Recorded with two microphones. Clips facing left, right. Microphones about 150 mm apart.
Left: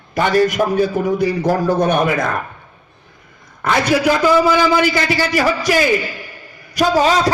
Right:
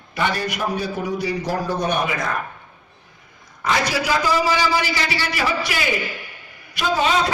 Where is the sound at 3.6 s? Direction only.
55° left (ahead or behind); by 7.2 s 40° left (ahead or behind).